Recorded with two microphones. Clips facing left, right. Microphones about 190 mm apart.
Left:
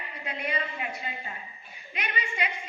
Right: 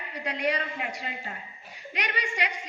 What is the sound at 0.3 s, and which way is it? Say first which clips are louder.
A woman's voice: right 4 dB; 75° right (ahead or behind).